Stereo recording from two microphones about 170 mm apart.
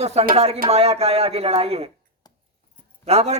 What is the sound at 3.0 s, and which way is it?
Speech, 40° right (ahead or behind).